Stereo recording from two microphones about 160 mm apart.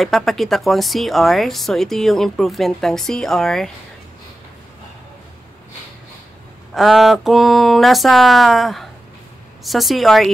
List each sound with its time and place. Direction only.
0.0 s speech: centre (ahead or behind)
6.7 s speech: centre (ahead or behind)